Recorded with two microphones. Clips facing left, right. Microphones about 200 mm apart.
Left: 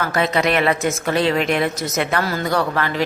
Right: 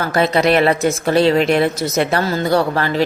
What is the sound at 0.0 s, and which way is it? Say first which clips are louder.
A woman's voice: right 4 dB; 35° right (ahead or behind).